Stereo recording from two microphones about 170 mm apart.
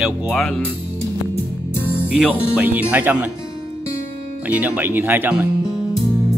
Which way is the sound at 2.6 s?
10° right (ahead or behind).